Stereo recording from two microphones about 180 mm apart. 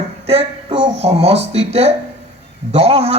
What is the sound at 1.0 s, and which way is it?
A man's voice, 35° right (ahead or behind).